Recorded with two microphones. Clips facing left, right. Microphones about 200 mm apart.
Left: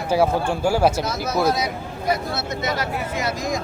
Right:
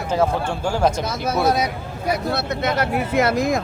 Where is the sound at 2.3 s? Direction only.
60° right (ahead or behind).